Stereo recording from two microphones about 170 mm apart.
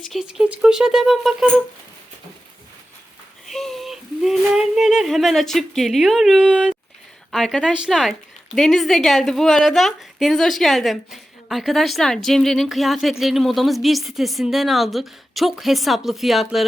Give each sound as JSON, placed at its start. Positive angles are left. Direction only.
{"t": 0.0, "sound": "speech", "side_deg": 0}
{"t": 3.5, "sound": "speech", "side_deg": 0}